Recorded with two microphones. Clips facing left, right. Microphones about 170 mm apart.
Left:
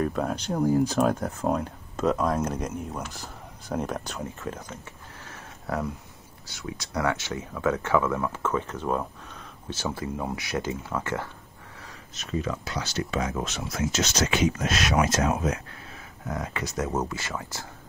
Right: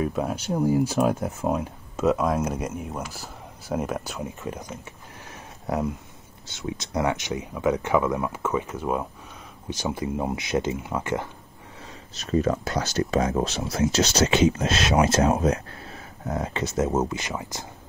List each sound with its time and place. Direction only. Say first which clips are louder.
0.0 s speech: right 1 dB; 5° right (ahead or behind)
5.3 s a sound: right 3 dB; 20° right (ahead or behind)
6.4 s speech: right 5 dB; 20° right (ahead or behind)
12.1 s speech: right 7 dB; 35° right (ahead or behind); by 17.6 s 20° right (ahead or behind)